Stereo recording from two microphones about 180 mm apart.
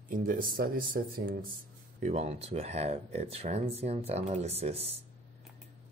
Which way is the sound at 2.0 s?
35° right (ahead or behind).